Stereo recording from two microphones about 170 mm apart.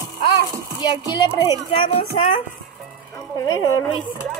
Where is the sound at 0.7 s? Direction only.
25° left (ahead or behind).